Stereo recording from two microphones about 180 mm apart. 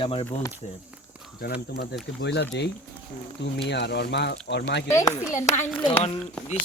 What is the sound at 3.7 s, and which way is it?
Speech, 70° left (ahead or behind).